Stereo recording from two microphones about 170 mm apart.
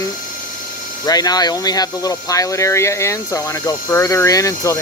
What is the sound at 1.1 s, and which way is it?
Speech, 20° left (ahead or behind).